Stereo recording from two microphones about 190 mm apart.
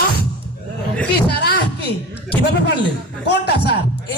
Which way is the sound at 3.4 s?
60° left (ahead or behind).